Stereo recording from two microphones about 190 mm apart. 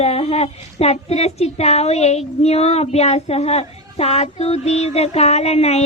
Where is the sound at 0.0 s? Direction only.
35° left (ahead or behind).